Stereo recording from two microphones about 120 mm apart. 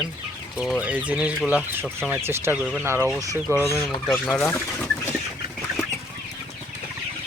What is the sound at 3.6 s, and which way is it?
Speech, 20° left (ahead or behind).